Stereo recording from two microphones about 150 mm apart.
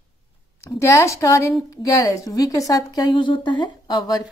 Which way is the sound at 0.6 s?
20° left (ahead or behind).